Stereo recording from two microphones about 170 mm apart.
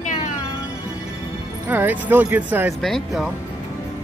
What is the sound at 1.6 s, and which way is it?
Speech, 10° right (ahead or behind).